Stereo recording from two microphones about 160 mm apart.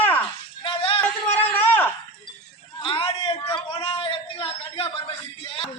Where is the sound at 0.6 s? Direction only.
30° left (ahead or behind).